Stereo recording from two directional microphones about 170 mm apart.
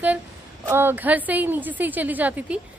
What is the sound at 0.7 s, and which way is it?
A woman's voice, 15° right (ahead or behind).